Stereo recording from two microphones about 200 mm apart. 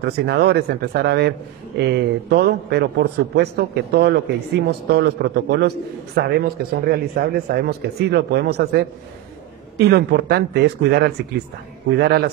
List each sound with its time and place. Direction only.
0.0 s a man's voice: 55° right (ahead or behind)